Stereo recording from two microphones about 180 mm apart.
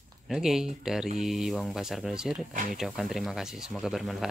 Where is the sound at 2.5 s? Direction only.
50° right (ahead or behind).